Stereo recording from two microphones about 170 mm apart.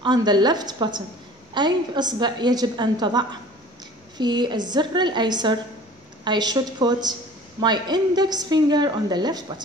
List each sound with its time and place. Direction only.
0.0 s a woman's voice: 25° right (ahead or behind)